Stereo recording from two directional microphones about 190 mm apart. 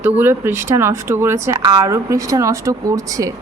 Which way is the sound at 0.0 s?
10° right (ahead or behind).